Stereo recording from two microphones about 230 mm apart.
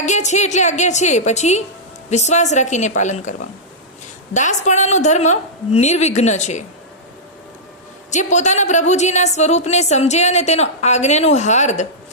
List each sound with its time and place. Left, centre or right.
0.0 s a woman's voice: left
4.4 s a woman's voice: left
8.1 s a woman's voice: left